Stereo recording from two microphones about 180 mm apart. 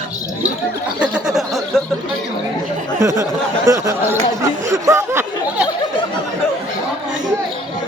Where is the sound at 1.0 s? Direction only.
5° right (ahead or behind).